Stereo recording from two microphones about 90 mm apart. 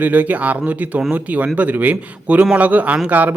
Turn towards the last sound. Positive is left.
turn(degrees=-15)  # may be behind; listen again after turning